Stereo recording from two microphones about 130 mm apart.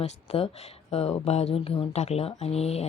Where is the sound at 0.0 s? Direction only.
55° left (ahead or behind).